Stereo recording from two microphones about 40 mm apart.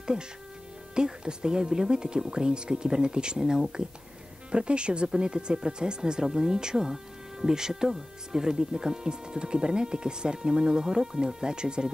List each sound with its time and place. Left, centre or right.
0.9 s speech: centre